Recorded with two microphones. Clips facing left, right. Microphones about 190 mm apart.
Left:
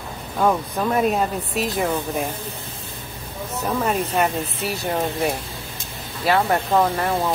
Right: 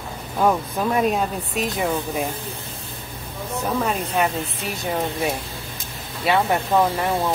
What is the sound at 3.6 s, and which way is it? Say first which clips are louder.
Speech: left 2 dB; centre (ahead or behind).